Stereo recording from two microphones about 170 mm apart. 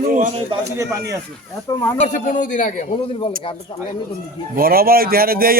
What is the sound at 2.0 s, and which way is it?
A man's voice, 45° left (ahead or behind).